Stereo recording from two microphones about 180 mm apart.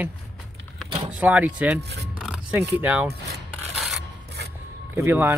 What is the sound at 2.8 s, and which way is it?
Speech, 10° right (ahead or behind).